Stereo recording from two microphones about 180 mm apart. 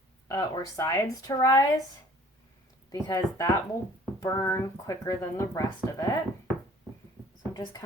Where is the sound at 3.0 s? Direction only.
20° left (ahead or behind).